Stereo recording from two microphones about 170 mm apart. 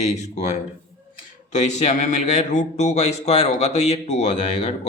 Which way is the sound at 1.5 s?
45° left (ahead or behind).